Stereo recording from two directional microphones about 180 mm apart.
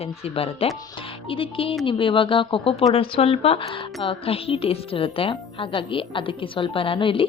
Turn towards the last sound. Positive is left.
turn(degrees=30)  # may be behind; listen again after turning